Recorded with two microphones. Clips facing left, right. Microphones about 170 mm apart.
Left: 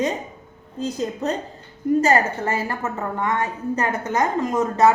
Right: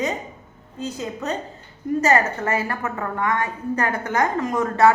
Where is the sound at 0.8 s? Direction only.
35° left (ahead or behind).